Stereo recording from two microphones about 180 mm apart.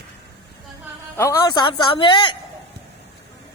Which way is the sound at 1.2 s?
20° left (ahead or behind).